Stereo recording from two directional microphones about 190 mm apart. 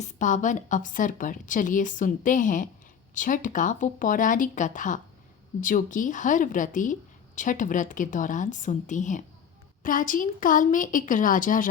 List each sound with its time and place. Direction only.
0.0 s a woman's voice: 40° left (ahead or behind)